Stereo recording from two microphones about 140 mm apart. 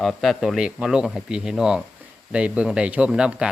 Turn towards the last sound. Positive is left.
turn(degrees=-5)  # may be behind; listen again after turning